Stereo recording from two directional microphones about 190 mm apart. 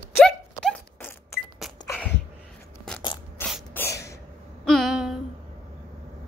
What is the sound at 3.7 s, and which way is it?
Sneeze, 15° left (ahead or behind).